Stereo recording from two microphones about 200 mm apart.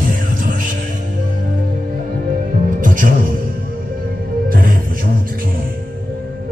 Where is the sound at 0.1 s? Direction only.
40° right (ahead or behind).